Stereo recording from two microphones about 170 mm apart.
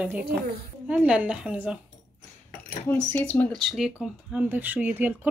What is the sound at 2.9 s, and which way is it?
Speech, 10° left (ahead or behind).